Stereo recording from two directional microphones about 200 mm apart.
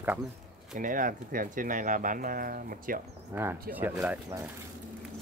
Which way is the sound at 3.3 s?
15° right (ahead or behind).